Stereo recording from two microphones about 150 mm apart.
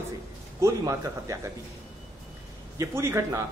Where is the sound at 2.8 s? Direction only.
20° right (ahead or behind).